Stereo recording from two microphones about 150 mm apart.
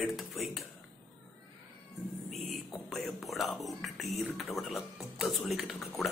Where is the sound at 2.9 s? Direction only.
Centre (ahead or behind).